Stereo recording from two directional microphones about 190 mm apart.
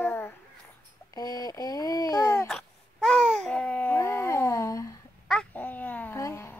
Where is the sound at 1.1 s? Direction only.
20° left (ahead or behind).